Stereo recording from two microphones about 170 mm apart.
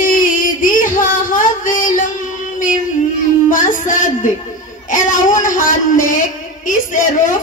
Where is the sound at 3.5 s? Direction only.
50° left (ahead or behind).